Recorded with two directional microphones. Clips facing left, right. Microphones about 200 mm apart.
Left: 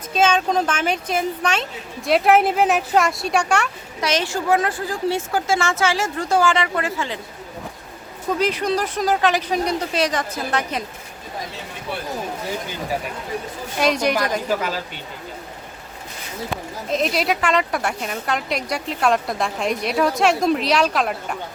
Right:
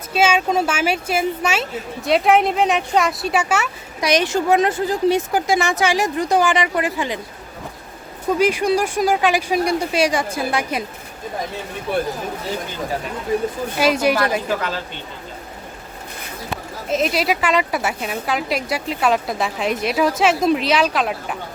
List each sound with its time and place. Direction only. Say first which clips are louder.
0.1 s speech: right 1 dB; 10° right (ahead or behind)
4.0 s a woman's voice: right 4 dB; 15° right (ahead or behind)
8.3 s a woman's voice: right 4 dB; 10° right (ahead or behind)
11.9 s speech: right 8 dB; 50° right (ahead or behind)
13.7 s speech: right 2 dB; 5° right (ahead or behind)
16.9 s speech: right 2 dB; centre (ahead or behind)